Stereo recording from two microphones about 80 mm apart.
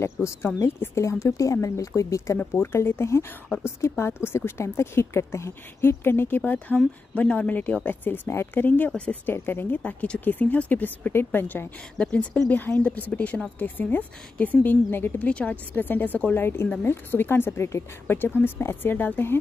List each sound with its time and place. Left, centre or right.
0.0 s speech: left